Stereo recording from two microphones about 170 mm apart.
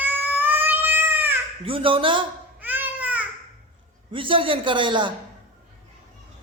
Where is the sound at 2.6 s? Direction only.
10° right (ahead or behind).